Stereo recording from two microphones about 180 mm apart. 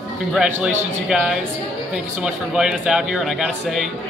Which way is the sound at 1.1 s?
5° right (ahead or behind).